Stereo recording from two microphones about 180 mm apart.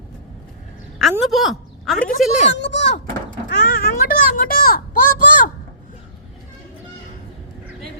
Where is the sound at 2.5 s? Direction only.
75° left (ahead or behind).